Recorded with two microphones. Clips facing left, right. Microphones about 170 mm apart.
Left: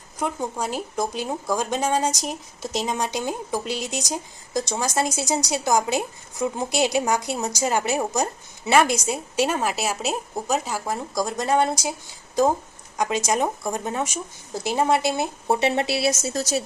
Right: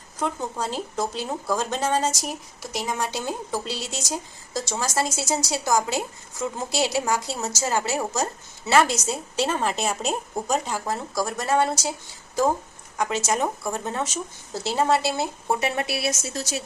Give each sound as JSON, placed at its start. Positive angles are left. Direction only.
{"t": 0.2, "sound": "speech", "side_deg": 10}
{"t": 13.0, "sound": "speech", "side_deg": 15}
{"t": 16.3, "sound": "a woman's voice", "side_deg": 40}